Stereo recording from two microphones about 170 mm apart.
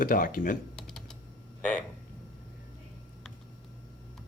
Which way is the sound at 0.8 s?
5° left (ahead or behind).